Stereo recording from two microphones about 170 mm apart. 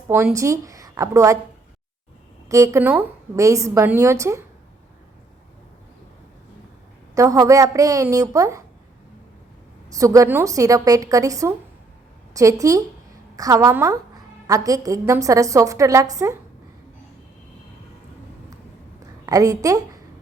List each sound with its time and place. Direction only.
0.3 s a woman's voice: 20° right (ahead or behind)
2.5 s a woman's voice: 15° right (ahead or behind)
7.2 s a woman's voice: 20° right (ahead or behind)
9.9 s a woman's voice: 20° right (ahead or behind)
19.2 s a woman's voice: 20° right (ahead or behind)